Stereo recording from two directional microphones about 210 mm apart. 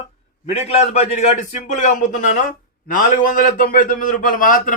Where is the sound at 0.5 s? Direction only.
30° left (ahead or behind).